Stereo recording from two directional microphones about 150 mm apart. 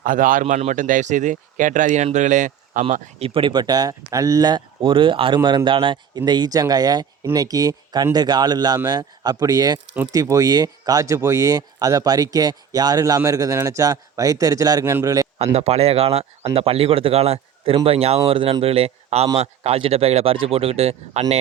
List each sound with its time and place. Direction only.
0.0 s speech: 65° right (ahead or behind)
2.9 s a man's voice: 40° right (ahead or behind); by 15.3 s 25° right (ahead or behind)
15.5 s speech: 45° right (ahead or behind)